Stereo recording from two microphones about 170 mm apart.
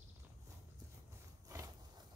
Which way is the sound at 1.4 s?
20° right (ahead or behind).